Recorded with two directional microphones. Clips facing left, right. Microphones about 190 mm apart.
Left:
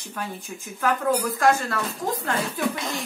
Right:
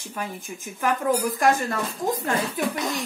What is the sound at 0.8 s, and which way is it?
Speech, 15° right (ahead or behind).